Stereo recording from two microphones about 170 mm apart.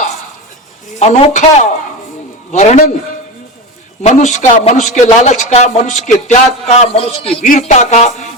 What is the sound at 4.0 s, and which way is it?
A man's voice, 45° left (ahead or behind).